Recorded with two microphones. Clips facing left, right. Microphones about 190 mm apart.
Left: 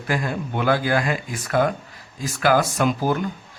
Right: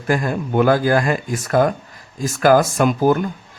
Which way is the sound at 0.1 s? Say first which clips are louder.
Right 6 dB; 45° right (ahead or behind).